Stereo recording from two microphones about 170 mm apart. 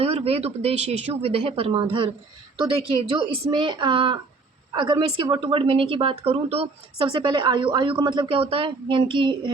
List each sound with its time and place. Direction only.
0.0 s a woman's voice: 35° right (ahead or behind)